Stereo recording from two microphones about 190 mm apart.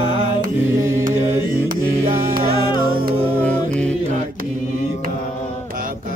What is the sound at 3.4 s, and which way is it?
A capella, 5° left (ahead or behind).